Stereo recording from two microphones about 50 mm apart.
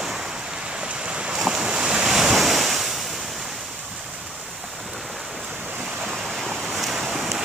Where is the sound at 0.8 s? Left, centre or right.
Centre.